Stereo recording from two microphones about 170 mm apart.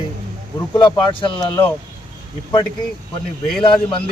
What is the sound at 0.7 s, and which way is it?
Speech, 25° left (ahead or behind).